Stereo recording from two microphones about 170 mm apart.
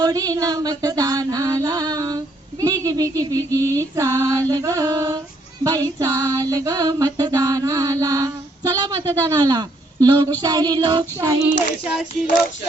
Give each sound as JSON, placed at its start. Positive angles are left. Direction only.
{"t": 0.0, "sound": "music", "side_deg": -20}
{"t": 3.7, "sound": "female singing", "side_deg": -20}